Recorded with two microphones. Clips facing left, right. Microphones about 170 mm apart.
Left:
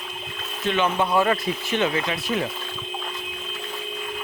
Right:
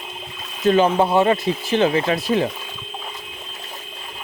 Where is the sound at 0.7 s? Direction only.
35° right (ahead or behind).